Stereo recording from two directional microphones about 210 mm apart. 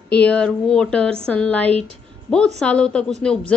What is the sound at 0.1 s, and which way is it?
A woman's voice, 5° left (ahead or behind).